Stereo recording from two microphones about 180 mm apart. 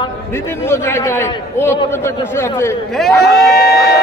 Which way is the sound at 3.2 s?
60° left (ahead or behind).